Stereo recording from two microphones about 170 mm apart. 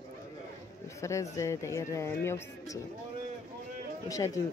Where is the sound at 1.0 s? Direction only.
15° left (ahead or behind).